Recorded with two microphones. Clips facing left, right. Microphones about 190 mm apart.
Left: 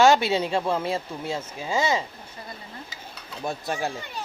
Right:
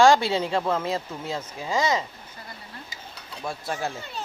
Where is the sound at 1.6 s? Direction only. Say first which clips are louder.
Even; 25° left (ahead or behind).